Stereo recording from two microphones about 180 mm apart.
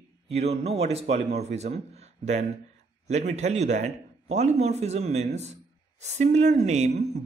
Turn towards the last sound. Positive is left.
turn(degrees=-40)  # may be behind; listen again after turning